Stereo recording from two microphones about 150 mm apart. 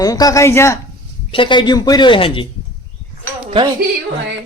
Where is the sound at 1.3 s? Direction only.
35° left (ahead or behind).